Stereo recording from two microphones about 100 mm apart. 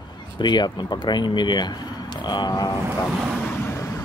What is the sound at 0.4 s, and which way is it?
Speech, 45° left (ahead or behind).